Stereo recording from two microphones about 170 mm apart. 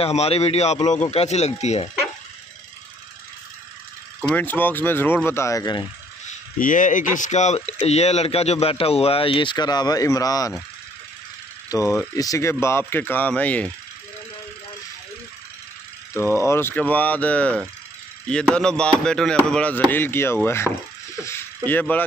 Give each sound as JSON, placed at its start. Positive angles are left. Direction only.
{"t": 0.0, "sound": "speech", "side_deg": 35}
{"t": 4.2, "sound": "speech", "side_deg": 5}
{"t": 6.6, "sound": "speech", "side_deg": 50}
{"t": 11.7, "sound": "speech", "side_deg": 20}
{"t": 16.3, "sound": "speech", "side_deg": 15}
{"t": 18.3, "sound": "chop", "side_deg": 5}
{"t": 19.5, "sound": "speech", "side_deg": 10}
{"t": 21.2, "sound": "a sound", "side_deg": 15}
{"t": 21.6, "sound": "speech", "side_deg": 10}